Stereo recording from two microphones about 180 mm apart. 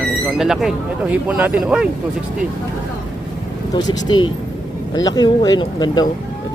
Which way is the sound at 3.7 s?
20° left (ahead or behind).